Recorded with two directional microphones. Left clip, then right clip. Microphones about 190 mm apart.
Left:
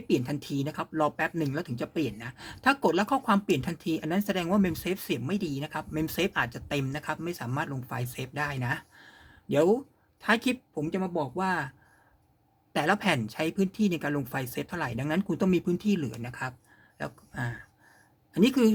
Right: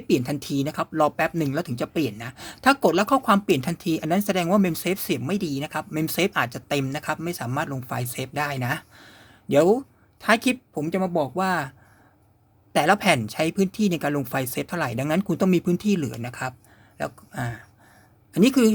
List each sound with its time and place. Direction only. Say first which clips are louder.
0.1 s speech: right 5 dB; 30° right (ahead or behind)
12.7 s speech: right 7 dB; 25° right (ahead or behind)
17.0 s a sound: right 6 dB; 30° right (ahead or behind)
18.3 s speech: right 5 dB; 25° right (ahead or behind)